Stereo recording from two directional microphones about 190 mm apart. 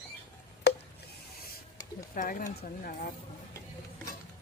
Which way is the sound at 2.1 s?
45° left (ahead or behind).